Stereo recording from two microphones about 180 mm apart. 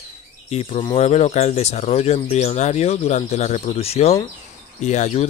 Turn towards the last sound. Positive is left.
turn(degrees=40)  # may be behind; listen again after turning